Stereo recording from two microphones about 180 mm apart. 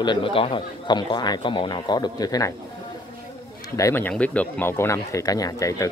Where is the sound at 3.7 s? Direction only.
15° left (ahead or behind).